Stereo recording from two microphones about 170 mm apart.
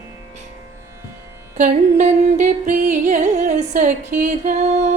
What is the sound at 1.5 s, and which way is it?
Music, 45° right (ahead or behind).